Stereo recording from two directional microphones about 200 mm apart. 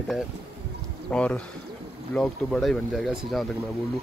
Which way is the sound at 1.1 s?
5° left (ahead or behind).